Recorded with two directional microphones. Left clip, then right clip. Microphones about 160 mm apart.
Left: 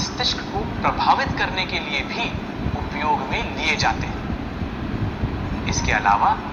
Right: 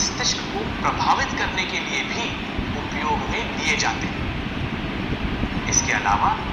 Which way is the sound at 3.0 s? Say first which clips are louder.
Left 3 dB; 45° left (ahead or behind).